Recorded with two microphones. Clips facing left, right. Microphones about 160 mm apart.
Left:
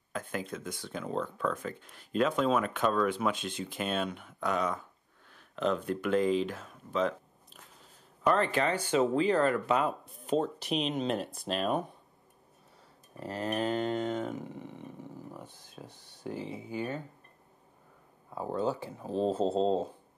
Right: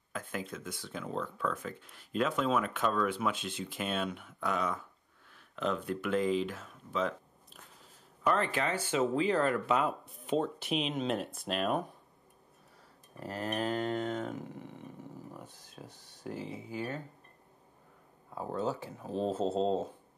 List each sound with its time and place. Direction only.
0.1 s speech: 5° right (ahead or behind)
1.1 s speech: 30° left (ahead or behind)
1.5 s speech: 5° right (ahead or behind)
2.3 s speech: 35° left (ahead or behind)
2.6 s speech: 5° right (ahead or behind)
7.0 s a sound: centre (ahead or behind)
8.3 s speech: 5° right (ahead or behind)
13.1 s a sound: centre (ahead or behind)
18.3 s speech: centre (ahead or behind)